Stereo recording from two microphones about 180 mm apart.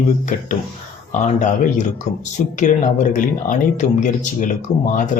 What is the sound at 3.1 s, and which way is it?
Speech, 45° left (ahead or behind).